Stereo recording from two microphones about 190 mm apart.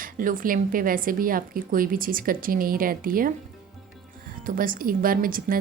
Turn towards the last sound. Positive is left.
turn(degrees=-50)  # may be behind; listen again after turning